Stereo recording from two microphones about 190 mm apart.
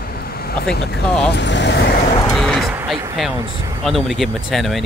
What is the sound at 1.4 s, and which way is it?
Speech, 65° left (ahead or behind).